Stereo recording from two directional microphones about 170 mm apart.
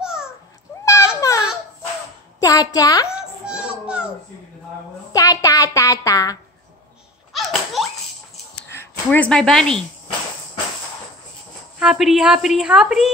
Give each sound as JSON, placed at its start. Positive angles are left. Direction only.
{"t": 0.0, "sound": "cat", "side_deg": -5}
{"t": 0.8, "sound": "a sound", "side_deg": 15}
{"t": 2.4, "sound": "a woman's voice", "side_deg": 20}
{"t": 3.2, "sound": "a sound", "side_deg": -5}
{"t": 5.1, "sound": "a woman's voice", "side_deg": 20}
{"t": 7.3, "sound": "laughter", "side_deg": 0}
{"t": 8.6, "sound": "speech", "side_deg": 15}
{"t": 11.8, "sound": "a woman's voice", "side_deg": -5}